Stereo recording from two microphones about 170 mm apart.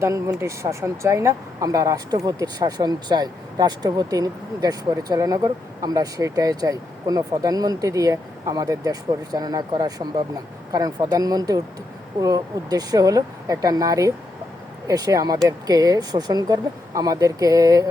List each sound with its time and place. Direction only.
0.0 s speech: 15° right (ahead or behind)